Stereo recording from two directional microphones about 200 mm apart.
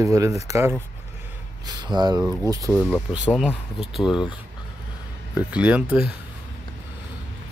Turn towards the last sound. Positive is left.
turn(degrees=-5)  # may be behind; listen again after turning